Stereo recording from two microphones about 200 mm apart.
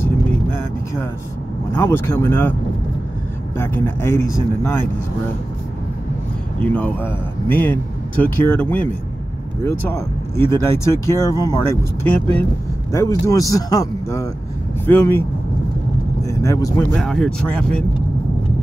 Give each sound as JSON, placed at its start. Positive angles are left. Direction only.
{"t": 1.7, "sound": "speech", "side_deg": 10}
{"t": 3.5, "sound": "speech", "side_deg": 10}
{"t": 6.6, "sound": "speech", "side_deg": 5}
{"t": 16.3, "sound": "speech", "side_deg": 15}
{"t": 16.9, "sound": "speech", "side_deg": 5}